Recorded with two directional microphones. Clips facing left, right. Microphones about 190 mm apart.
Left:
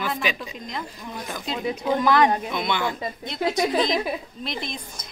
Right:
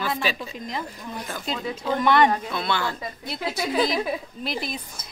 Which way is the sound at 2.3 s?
15° left (ahead or behind).